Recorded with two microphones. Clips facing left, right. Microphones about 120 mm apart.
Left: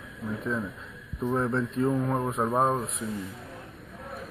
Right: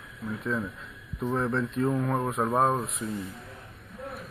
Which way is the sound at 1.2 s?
10° left (ahead or behind).